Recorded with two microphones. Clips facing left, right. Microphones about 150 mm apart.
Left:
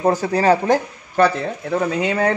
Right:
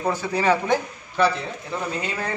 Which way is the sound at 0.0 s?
45° left (ahead or behind).